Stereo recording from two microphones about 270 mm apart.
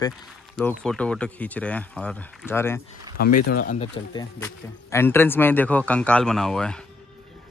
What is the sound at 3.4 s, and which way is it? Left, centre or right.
Speech, left.